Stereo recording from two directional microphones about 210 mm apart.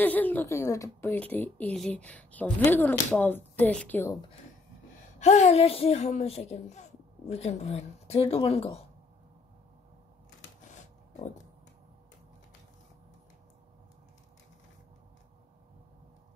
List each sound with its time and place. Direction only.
0.0 s a woman's voice: 10° left (ahead or behind)
5.2 s a woman's voice: 30° left (ahead or behind)